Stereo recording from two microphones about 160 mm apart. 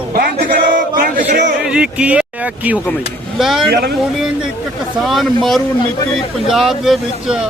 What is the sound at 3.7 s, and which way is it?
Speech, 90° right.